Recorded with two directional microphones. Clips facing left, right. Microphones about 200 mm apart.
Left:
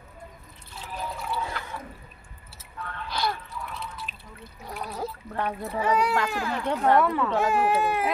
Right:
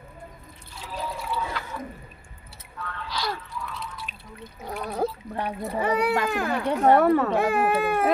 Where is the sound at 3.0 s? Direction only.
55° left (ahead or behind).